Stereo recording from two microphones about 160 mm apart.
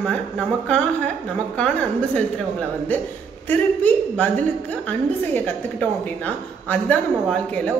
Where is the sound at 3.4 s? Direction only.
10° left (ahead or behind).